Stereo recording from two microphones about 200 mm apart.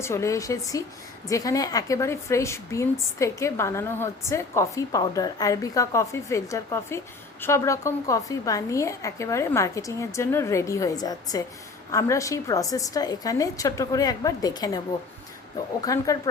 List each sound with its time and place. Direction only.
0.0 s a woman's voice: 15° left (ahead or behind)
15.8 s a woman's voice: 15° left (ahead or behind)